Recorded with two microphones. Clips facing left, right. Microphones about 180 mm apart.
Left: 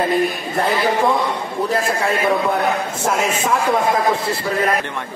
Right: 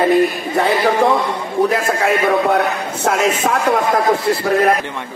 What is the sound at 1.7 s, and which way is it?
A man's voice, 75° right (ahead or behind).